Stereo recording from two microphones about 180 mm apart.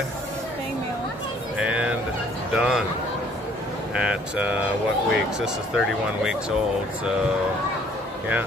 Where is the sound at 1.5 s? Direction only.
5° right (ahead or behind).